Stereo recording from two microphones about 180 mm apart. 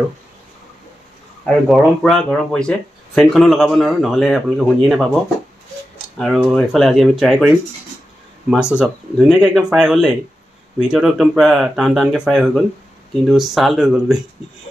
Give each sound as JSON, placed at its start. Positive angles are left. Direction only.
{"t": 1.8, "sound": "speech", "side_deg": 0}